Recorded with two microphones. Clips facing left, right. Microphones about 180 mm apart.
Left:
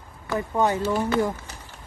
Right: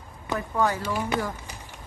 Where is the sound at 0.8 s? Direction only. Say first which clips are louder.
Left 5 dB; 15° right (ahead or behind).